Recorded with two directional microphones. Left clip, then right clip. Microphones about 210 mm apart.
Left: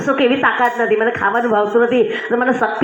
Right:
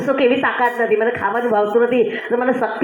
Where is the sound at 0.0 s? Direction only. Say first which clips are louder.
Left 1 dB; 50° left (ahead or behind).